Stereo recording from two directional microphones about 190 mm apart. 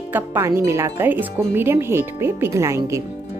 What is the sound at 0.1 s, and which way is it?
Speech, 10° right (ahead or behind).